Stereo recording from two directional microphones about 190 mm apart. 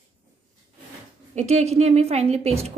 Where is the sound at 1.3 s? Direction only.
35° right (ahead or behind).